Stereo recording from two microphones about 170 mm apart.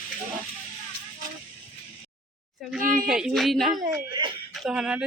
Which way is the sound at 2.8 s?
55° right (ahead or behind).